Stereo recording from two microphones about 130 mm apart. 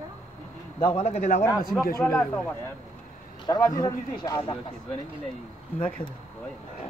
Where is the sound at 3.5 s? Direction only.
30° left (ahead or behind).